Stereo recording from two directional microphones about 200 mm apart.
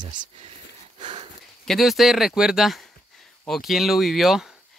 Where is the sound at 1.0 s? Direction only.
25° right (ahead or behind).